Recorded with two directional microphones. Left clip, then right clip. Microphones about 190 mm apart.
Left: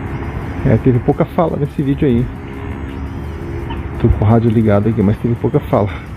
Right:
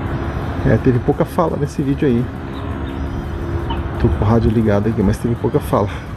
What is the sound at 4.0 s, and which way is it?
Speech, 20° left (ahead or behind).